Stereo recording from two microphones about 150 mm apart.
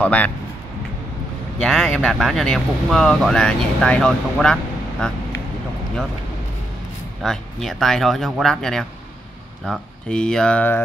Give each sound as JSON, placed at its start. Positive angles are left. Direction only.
{"t": 0.0, "sound": "speech", "side_deg": 10}
{"t": 1.6, "sound": "speech", "side_deg": 0}
{"t": 7.2, "sound": "speech", "side_deg": 0}